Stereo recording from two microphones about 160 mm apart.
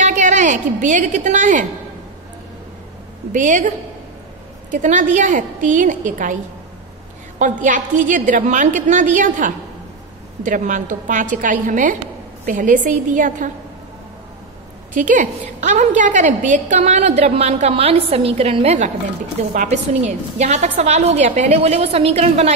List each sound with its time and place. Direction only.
0.0 s a woman's voice: 50° right (ahead or behind)
3.3 s a woman's voice: 50° right (ahead or behind)
7.3 s a woman's voice: 50° right (ahead or behind)
15.0 s a woman's voice: 50° right (ahead or behind)